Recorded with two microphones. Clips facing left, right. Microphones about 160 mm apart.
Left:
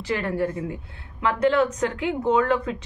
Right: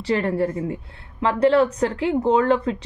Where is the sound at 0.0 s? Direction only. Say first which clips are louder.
Right 4 dB; 35° right (ahead or behind).